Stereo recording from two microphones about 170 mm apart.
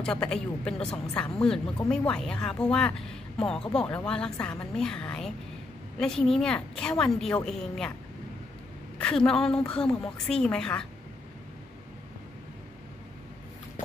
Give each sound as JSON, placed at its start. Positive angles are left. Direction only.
{"t": 0.0, "sound": "speech", "side_deg": 5}
{"t": 8.9, "sound": "speech", "side_deg": 5}